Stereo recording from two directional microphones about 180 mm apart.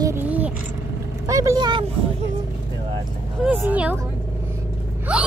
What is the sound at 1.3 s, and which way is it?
Vehicle, 20° right (ahead or behind).